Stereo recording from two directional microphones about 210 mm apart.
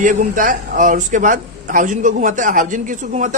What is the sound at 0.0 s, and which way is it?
A man's voice, 40° right (ahead or behind).